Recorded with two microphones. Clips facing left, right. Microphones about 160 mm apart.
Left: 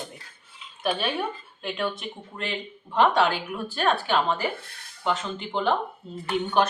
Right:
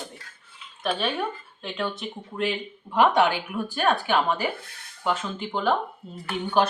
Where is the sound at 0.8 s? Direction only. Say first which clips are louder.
Even; centre (ahead or behind).